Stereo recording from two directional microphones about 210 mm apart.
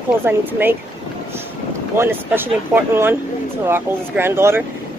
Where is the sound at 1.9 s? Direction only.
10° right (ahead or behind).